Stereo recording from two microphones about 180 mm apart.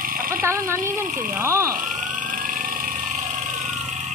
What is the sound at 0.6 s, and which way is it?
Speech, 15° right (ahead or behind).